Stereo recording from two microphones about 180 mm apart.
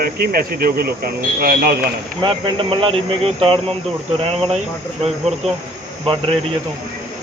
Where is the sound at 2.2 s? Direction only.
30° right (ahead or behind).